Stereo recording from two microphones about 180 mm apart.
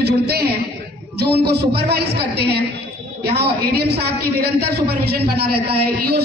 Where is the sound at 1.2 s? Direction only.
65° right (ahead or behind).